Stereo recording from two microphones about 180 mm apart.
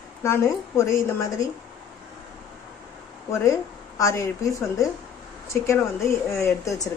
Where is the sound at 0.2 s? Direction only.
15° left (ahead or behind).